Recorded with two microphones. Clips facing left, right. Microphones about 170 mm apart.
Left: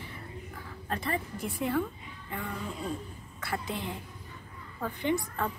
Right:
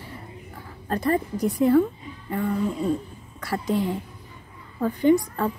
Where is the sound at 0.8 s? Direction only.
40° right (ahead or behind).